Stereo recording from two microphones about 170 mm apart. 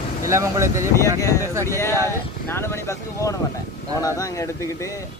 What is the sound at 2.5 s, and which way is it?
Speech, 15° left (ahead or behind).